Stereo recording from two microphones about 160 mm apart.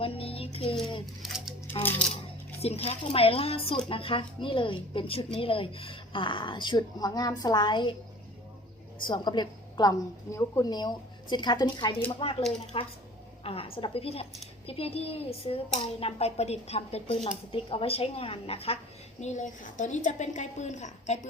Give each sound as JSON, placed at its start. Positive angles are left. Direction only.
{"t": 0.0, "sound": "music", "side_deg": 35}
{"t": 2.6, "sound": "speech", "side_deg": 40}
{"t": 9.0, "sound": "a woman's voice", "side_deg": 30}